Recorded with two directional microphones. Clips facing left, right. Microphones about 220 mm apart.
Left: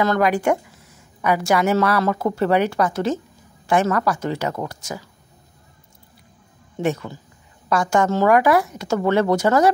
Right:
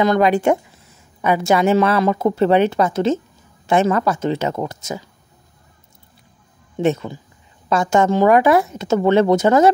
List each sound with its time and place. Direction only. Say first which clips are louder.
0.0 s a woman's voice: right 3 dB; 20° right (ahead or behind)
6.8 s a woman's voice: right 4 dB; 25° right (ahead or behind)